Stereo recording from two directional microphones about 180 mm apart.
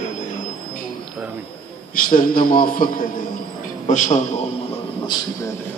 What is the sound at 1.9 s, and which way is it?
A man's voice, 50° left (ahead or behind).